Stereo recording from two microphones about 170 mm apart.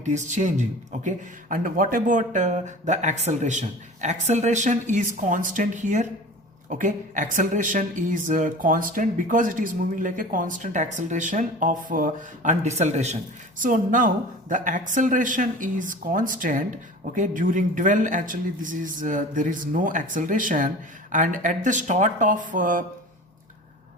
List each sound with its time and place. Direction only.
0.0 s a woman's voice: 45° right (ahead or behind)
13.6 s a woman's voice: 50° right (ahead or behind)